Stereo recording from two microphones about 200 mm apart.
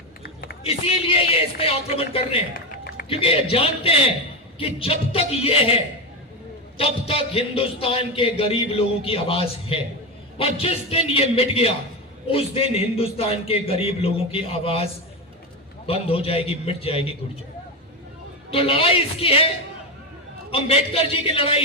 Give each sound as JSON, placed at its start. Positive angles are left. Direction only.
{"t": 0.6, "sound": "a man's voice", "side_deg": 30}
{"t": 2.5, "sound": "run", "side_deg": 45}
{"t": 3.1, "sound": "a man's voice", "side_deg": 30}
{"t": 15.9, "sound": "a man's voice", "side_deg": 30}
{"t": 18.5, "sound": "a man's voice", "side_deg": 30}
{"t": 20.5, "sound": "a man's voice", "side_deg": 30}